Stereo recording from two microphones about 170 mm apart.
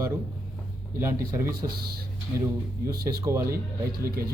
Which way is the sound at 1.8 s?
65° right (ahead or behind).